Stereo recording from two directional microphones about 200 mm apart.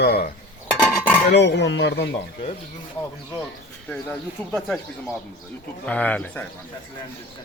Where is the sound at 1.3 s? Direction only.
60° left (ahead or behind).